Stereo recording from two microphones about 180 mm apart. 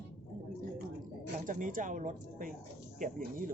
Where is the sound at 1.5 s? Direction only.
50° right (ahead or behind).